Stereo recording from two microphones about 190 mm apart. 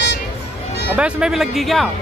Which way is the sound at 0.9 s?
5° right (ahead or behind).